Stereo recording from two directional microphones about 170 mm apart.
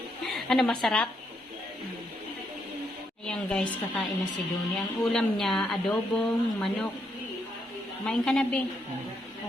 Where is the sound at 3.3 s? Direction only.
5° left (ahead or behind).